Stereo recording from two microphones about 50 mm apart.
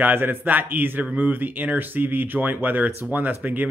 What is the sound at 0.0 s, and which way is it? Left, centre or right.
A man's voice, right.